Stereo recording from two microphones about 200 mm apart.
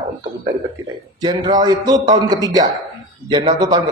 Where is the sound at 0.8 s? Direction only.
20° right (ahead or behind).